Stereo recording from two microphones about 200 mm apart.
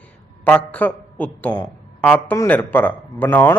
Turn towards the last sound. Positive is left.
turn(degrees=10)  # may be behind; listen again after turning